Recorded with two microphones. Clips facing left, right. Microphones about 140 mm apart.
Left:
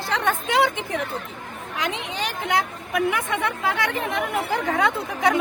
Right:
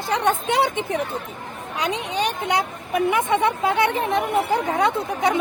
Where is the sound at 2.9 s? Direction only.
25° right (ahead or behind).